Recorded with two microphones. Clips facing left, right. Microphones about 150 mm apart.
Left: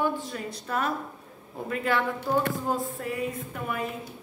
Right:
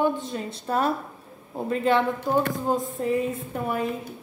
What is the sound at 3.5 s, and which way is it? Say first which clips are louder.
Speech: right 6 dB; 35° right (ahead or behind).